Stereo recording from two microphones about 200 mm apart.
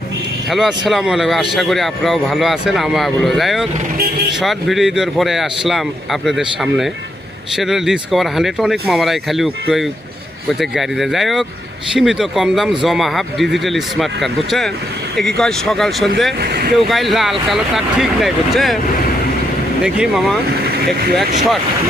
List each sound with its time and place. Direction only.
0.5 s speech: centre (ahead or behind)
16.4 s speech: 55° right (ahead or behind)
16.7 s speech: centre (ahead or behind)
19.8 s speech: centre (ahead or behind)